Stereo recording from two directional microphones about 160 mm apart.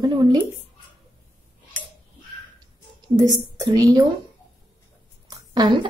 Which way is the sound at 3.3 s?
25° right (ahead or behind).